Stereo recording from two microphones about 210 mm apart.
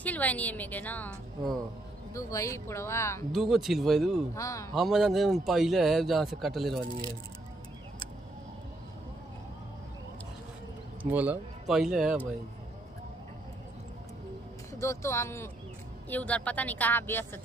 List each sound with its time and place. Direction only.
0.0 s a woman's voice: 5° left (ahead or behind)
2.1 s a woman's voice: 15° left (ahead or behind)
3.3 s speech: centre (ahead or behind)
4.4 s a woman's voice: 15° left (ahead or behind)
4.7 s speech: centre (ahead or behind)
11.1 s speech: 5° right (ahead or behind)
14.8 s a woman's voice: 15° left (ahead or behind)